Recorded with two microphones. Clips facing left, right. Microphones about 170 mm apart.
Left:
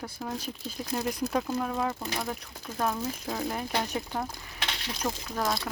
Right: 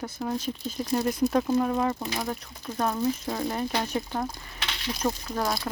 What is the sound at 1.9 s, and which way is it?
Speech, 20° right (ahead or behind).